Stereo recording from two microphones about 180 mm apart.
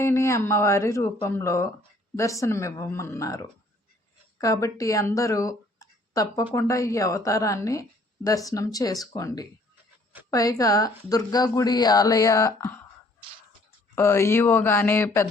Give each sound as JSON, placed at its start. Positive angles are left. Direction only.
{"t": 0.0, "sound": "a woman's voice", "side_deg": 15}
{"t": 13.9, "sound": "a woman's voice", "side_deg": 15}